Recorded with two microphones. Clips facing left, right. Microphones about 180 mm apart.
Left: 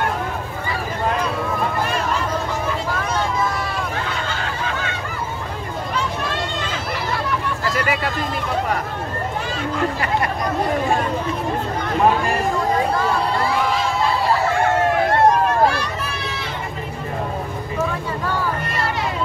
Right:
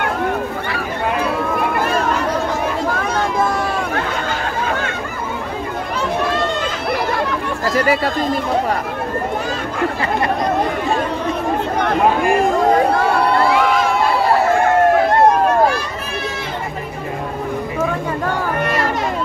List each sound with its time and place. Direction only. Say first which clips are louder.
7.6 s a sound: right 8 dB; 35° right (ahead or behind)
12.6 s crowd: right 5 dB; 60° right (ahead or behind)
18.6 s run: right 7 dB; 70° right (ahead or behind)